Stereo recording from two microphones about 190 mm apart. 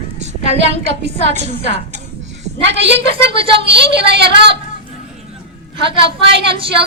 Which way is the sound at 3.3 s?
30° right (ahead or behind).